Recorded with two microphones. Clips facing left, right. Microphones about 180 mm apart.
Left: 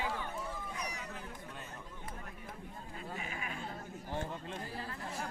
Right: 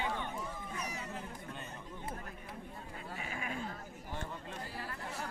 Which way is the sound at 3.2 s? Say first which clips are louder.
Right 2 dB; 30° right (ahead or behind).